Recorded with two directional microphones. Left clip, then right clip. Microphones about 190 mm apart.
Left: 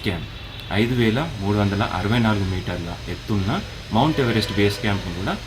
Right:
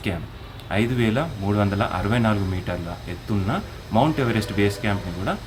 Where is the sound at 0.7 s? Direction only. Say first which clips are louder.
Left 2 dB; 5° right (ahead or behind).